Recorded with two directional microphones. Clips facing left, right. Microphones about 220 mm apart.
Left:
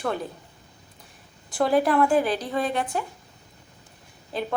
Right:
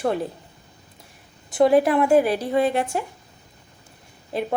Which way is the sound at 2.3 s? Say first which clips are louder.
Right 5 dB; 25° right (ahead or behind).